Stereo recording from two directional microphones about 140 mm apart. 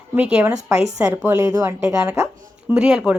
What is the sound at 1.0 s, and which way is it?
A woman's voice, 20° right (ahead or behind).